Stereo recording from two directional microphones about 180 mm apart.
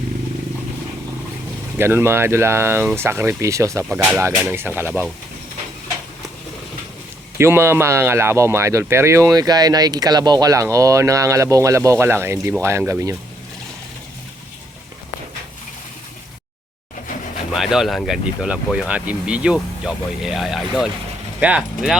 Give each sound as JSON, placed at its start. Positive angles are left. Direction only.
{"t": 1.8, "sound": "speech", "side_deg": -10}
{"t": 7.3, "sound": "speech", "side_deg": -15}
{"t": 17.5, "sound": "speech", "side_deg": 0}